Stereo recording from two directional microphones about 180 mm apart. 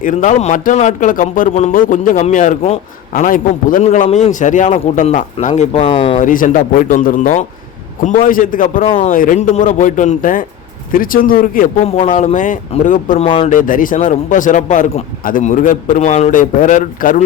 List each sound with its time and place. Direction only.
0.0 s a man's voice: 45° left (ahead or behind)
6.1 s a man's voice: 45° left (ahead or behind)
8.8 s speech: 30° left (ahead or behind)
9.0 s a man's voice: 50° left (ahead or behind)
13.2 s speech: 30° left (ahead or behind)
13.5 s a man's voice: 50° left (ahead or behind)